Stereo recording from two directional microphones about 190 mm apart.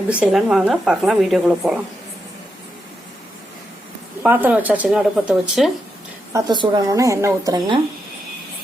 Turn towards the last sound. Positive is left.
turn(degrees=-20)  # may be behind; listen again after turning